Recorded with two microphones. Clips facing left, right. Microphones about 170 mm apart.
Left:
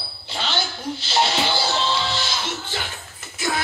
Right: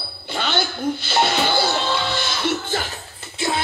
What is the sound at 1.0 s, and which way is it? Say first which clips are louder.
Music: even; 55° right (ahead or behind).